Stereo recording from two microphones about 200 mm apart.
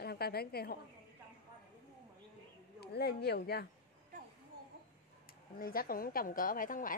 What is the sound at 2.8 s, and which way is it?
Speech, 55° left (ahead or behind).